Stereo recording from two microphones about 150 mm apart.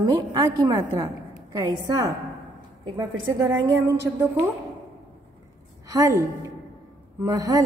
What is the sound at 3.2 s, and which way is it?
Speech, 25° right (ahead or behind).